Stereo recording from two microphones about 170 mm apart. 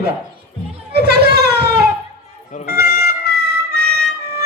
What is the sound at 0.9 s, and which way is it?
Children playing, 70° right (ahead or behind).